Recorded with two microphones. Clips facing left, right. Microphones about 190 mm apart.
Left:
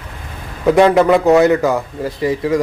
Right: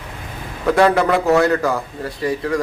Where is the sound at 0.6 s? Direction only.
20° left (ahead or behind).